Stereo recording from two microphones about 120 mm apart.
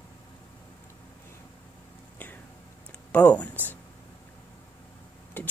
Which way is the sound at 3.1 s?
10° left (ahead or behind).